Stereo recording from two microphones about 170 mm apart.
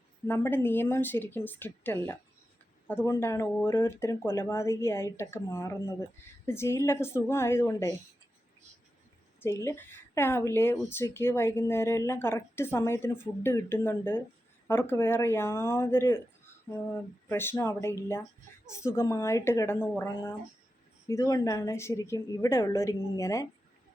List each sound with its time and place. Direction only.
0.3 s speech: 15° left (ahead or behind)
9.4 s speech: 15° left (ahead or behind)
17.2 s speech: 15° left (ahead or behind)
21.1 s speech: 15° left (ahead or behind)